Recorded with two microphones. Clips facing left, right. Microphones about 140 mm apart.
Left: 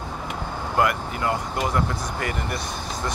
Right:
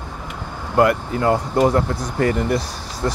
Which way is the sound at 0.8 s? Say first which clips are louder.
Right 7 dB; 35° right (ahead or behind).